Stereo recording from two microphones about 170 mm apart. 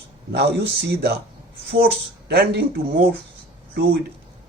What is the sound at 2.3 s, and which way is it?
Speech, 75° right (ahead or behind).